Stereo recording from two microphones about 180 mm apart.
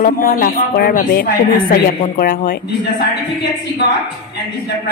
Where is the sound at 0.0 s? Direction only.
50° left (ahead or behind).